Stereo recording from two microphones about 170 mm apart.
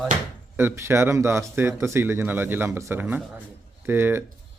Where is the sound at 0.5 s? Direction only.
15° right (ahead or behind).